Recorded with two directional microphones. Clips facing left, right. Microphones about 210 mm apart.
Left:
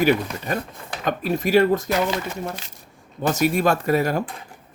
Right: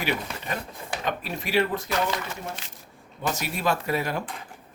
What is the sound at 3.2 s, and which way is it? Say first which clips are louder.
Speech: left 9 dB; 45° left (ahead or behind).